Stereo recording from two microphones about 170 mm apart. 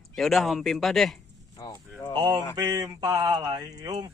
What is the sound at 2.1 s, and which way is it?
Speech, 25° right (ahead or behind).